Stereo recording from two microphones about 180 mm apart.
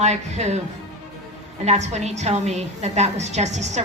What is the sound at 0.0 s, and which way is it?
Speech, 40° right (ahead or behind).